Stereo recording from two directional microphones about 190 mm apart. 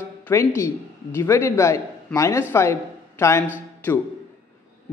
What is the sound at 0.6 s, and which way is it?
A woman's voice, 15° left (ahead or behind).